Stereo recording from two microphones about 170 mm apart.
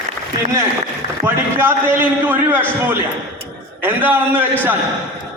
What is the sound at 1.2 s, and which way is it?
A man's voice, 15° right (ahead or behind).